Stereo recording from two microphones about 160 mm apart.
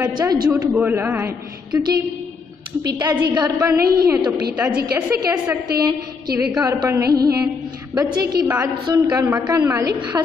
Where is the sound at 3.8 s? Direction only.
75° right (ahead or behind).